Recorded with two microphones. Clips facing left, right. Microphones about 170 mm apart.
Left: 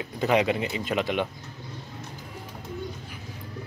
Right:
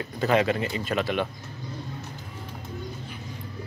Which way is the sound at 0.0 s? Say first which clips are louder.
Even; 15° left (ahead or behind).